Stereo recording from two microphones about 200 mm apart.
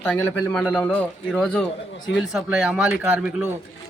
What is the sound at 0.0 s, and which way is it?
A man's voice, 10° left (ahead or behind).